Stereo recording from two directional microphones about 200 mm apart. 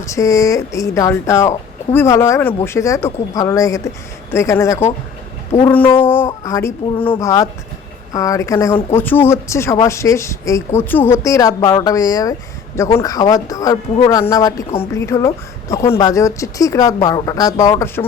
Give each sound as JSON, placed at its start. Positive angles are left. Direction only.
{"t": 0.0, "sound": "speech", "side_deg": 15}